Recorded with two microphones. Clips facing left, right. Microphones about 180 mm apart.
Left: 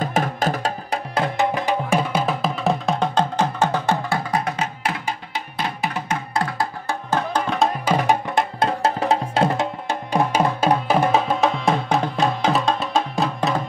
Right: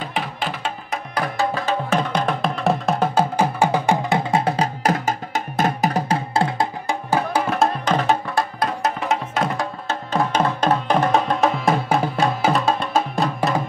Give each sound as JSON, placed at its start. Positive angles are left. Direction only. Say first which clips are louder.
{"t": 0.0, "sound": "music", "louder": "left 5 dB", "side_deg": 45}
{"t": 1.1, "sound": "music", "louder": "left 1 dB", "side_deg": 20}
{"t": 7.1, "sound": "music", "louder": "right 1 dB", "side_deg": -10}
{"t": 7.8, "sound": "music", "louder": "even", "side_deg": 10}
{"t": 8.5, "sound": "music", "louder": "left 2 dB", "side_deg": 30}
{"t": 9.8, "sound": "music", "louder": "even", "side_deg": 15}